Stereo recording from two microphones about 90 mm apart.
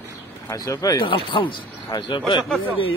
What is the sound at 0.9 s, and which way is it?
Speech, 70° left (ahead or behind).